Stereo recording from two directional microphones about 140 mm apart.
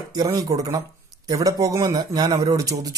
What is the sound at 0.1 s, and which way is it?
A man's voice, 25° right (ahead or behind).